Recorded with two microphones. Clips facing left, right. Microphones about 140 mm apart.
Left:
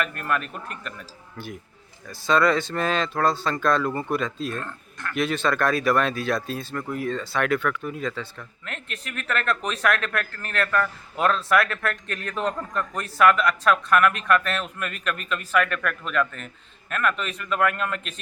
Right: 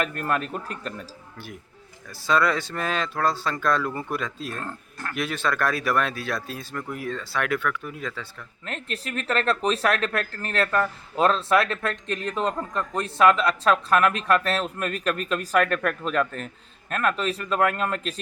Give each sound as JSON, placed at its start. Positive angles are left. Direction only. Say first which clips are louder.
{"t": 0.0, "sound": "speech", "louder": "right 1 dB", "side_deg": -35}
{"t": 2.0, "sound": "speech", "louder": "left 2 dB", "side_deg": -10}
{"t": 4.6, "sound": "speech", "louder": "right 1 dB", "side_deg": -35}
{"t": 5.1, "sound": "speech", "louder": "left 3 dB", "side_deg": -5}
{"t": 8.6, "sound": "speech", "louder": "right 5 dB", "side_deg": -35}